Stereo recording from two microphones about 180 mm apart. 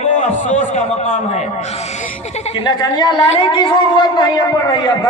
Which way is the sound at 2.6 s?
25° left (ahead or behind).